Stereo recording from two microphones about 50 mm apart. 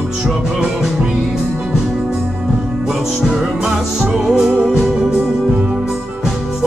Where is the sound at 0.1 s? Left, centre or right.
Centre.